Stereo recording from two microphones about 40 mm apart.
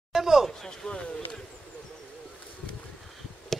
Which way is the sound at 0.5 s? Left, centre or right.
Centre.